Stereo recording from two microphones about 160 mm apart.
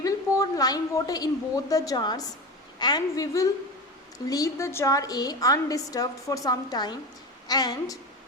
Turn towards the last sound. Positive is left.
turn(degrees=25)  # may be behind; listen again after turning